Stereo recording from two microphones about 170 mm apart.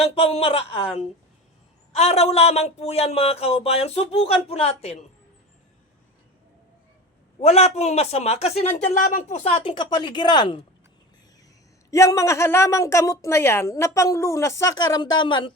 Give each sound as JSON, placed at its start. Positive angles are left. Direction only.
{"t": 0.0, "sound": "a man's voice", "side_deg": 35}
{"t": 7.4, "sound": "a man's voice", "side_deg": 40}
{"t": 11.9, "sound": "a woman's voice", "side_deg": 20}